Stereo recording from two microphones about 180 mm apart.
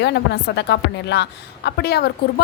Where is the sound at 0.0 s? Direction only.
70° left (ahead or behind).